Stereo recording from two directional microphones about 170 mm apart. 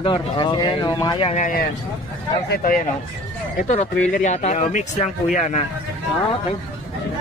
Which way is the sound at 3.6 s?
45° left (ahead or behind).